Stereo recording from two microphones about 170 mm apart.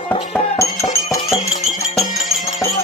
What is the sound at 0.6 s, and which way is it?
Music, 15° left (ahead or behind).